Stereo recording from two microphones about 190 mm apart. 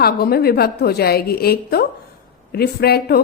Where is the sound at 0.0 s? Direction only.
55° left (ahead or behind).